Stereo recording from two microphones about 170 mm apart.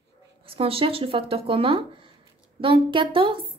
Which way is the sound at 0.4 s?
35° right (ahead or behind).